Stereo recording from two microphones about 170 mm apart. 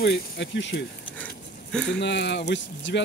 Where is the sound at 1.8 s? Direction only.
90° left.